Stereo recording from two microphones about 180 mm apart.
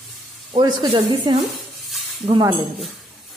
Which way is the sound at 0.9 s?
25° right (ahead or behind).